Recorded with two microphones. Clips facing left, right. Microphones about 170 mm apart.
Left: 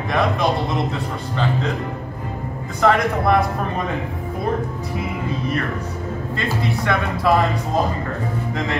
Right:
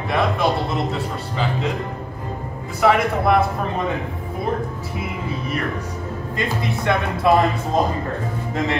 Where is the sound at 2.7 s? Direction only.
5° right (ahead or behind).